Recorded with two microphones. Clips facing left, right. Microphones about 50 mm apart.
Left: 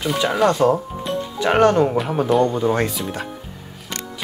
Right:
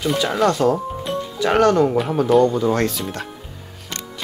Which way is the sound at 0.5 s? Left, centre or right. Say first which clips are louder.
Left 1 dB; left.